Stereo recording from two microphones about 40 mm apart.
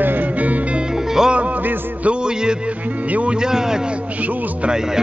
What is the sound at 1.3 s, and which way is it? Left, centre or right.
Music, right.